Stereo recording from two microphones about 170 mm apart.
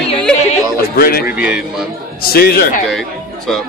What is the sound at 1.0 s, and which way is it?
Speech, 60° left (ahead or behind).